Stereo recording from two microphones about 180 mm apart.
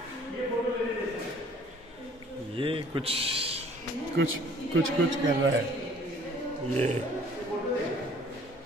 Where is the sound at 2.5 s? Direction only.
30° right (ahead or behind).